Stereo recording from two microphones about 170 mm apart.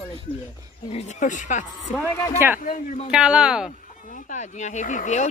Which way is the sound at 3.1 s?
5° right (ahead or behind).